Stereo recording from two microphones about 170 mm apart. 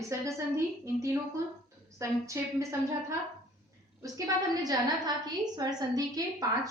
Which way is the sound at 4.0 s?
20° right (ahead or behind).